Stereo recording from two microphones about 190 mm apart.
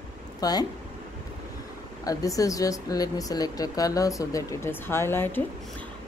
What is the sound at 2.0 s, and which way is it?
A woman's voice, 15° left (ahead or behind).